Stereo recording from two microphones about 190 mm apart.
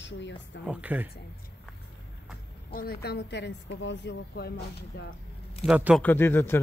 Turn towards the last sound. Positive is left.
turn(degrees=10)  # may be behind; listen again after turning